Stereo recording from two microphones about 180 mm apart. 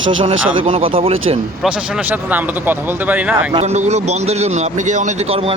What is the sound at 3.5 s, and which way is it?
A man's voice, 40° right (ahead or behind).